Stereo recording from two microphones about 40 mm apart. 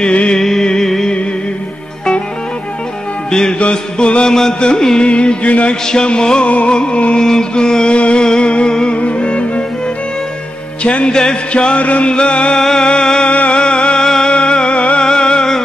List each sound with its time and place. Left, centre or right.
0.0 s music: left
0.4 s a sound: centre
3.3 s music: centre
3.5 s music: left
4.3 s a sound: centre
5.0 s music: left
5.5 s a man's voice: left
5.9 s music: left
7.2 s music: centre
10.8 s a man's voice: left
11.1 s music: left
14.0 s music: centre